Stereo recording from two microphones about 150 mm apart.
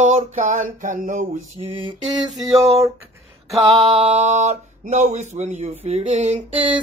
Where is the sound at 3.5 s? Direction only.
40° right (ahead or behind).